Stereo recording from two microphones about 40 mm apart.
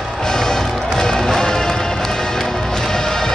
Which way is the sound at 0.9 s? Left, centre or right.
Centre.